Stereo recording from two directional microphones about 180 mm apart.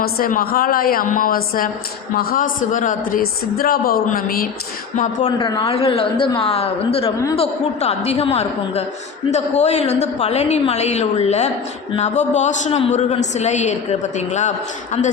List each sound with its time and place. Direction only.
0.0 s a woman's voice: 55° left (ahead or behind)
5.4 s a woman's voice: 30° left (ahead or behind)